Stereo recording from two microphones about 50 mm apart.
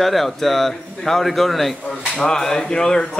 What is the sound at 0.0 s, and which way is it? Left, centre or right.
Speech, centre.